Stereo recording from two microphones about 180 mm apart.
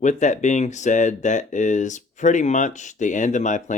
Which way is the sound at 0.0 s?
40° left (ahead or behind).